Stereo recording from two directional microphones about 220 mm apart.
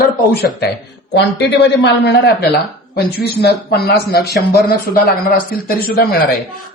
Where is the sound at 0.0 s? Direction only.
45° left (ahead or behind).